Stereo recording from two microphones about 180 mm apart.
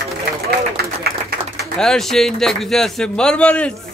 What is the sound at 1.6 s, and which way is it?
Speech, centre (ahead or behind).